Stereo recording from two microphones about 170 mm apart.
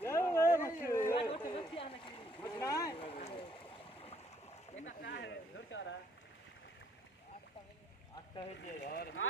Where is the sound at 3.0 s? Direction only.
35° left (ahead or behind).